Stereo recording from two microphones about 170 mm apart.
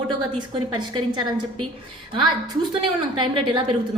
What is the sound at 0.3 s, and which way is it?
A woman's voice, 25° right (ahead or behind).